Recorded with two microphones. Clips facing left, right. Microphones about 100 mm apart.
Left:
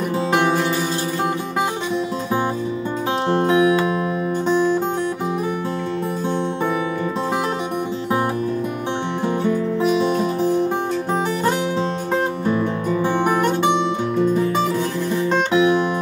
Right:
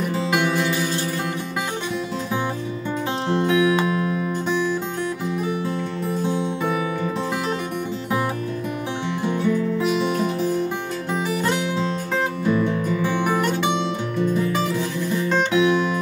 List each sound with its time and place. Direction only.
0.3 s music: 35° left (ahead or behind)
3.3 s music: 40° left (ahead or behind)
9.2 s music: 40° left (ahead or behind)
12.4 s music: 35° left (ahead or behind)
14.3 s music: 30° left (ahead or behind)